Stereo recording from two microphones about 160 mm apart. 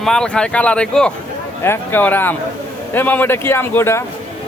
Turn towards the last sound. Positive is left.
turn(degrees=15)  # may be behind; listen again after turning